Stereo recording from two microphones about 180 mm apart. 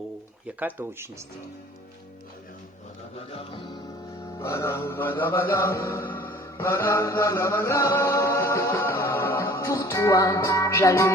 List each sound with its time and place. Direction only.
0.6 s speech: 10° right (ahead or behind)
3.3 s music: 25° left (ahead or behind)
4.4 s music: 15° left (ahead or behind)